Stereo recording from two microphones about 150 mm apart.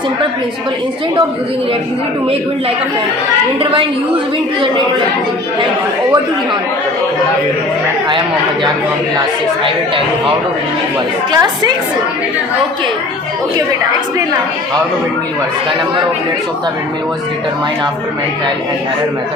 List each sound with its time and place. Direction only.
11.3 s a woman's voice: 25° right (ahead or behind)